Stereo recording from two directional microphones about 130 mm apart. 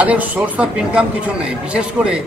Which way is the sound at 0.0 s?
10° right (ahead or behind).